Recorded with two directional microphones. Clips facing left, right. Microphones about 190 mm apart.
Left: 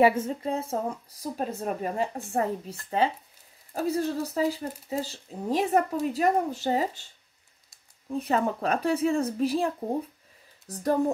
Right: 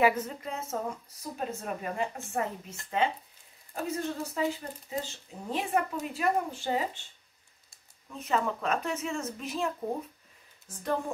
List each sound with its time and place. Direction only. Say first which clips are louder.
0.0 s speech: left 4 dB; 30° left (ahead or behind)
8.1 s speech: left 4 dB; 40° left (ahead or behind)
10.7 s speech: left 5 dB; 35° left (ahead or behind)